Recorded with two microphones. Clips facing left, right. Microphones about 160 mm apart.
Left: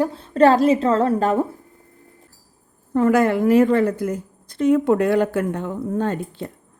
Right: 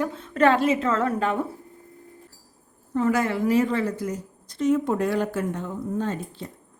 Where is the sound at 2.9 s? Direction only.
55° left (ahead or behind).